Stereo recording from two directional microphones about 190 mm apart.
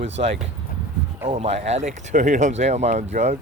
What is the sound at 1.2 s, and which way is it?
Speech, 35° right (ahead or behind).